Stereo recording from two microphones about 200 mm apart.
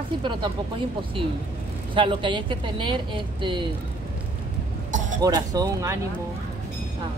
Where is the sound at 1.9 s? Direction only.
25° right (ahead or behind).